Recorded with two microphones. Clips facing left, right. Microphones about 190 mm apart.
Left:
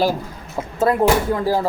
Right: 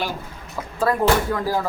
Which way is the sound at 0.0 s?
35° left (ahead or behind).